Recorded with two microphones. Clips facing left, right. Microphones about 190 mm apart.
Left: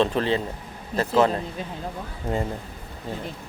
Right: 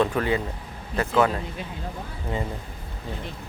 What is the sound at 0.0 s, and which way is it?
A man's voice, 25° left (ahead or behind).